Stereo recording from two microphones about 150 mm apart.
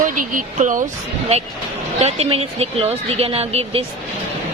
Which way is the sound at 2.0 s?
45° right (ahead or behind).